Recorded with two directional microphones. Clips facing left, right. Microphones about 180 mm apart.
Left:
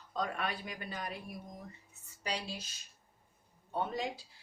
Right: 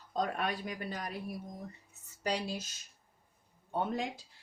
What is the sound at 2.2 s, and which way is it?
Speech, 45° right (ahead or behind).